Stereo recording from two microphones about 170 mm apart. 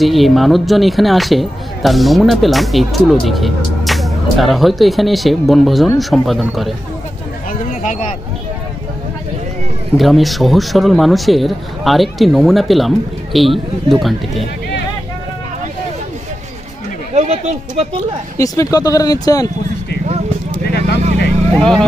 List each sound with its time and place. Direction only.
0.0 s speech: centre (ahead or behind)
7.8 s a sound: 50° left (ahead or behind)
9.9 s speech: centre (ahead or behind)
17.1 s speech: 40° right (ahead or behind)
18.4 s speech: 20° left (ahead or behind)
21.5 s speech: 5° left (ahead or behind)